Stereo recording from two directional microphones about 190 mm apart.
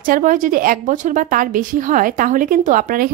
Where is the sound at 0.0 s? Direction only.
45° right (ahead or behind).